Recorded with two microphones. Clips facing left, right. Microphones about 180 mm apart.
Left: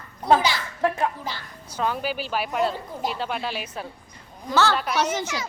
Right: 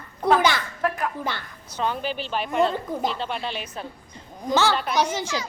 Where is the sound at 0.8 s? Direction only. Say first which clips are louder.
Left 4 dB; 25° left (ahead or behind).